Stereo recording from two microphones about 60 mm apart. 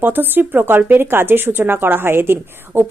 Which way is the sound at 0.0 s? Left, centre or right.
Right.